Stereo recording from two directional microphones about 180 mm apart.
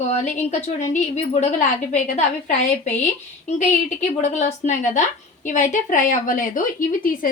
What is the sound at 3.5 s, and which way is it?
A woman's voice, 40° left (ahead or behind).